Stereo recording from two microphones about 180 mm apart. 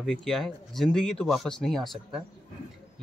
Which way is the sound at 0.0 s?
Centre (ahead or behind).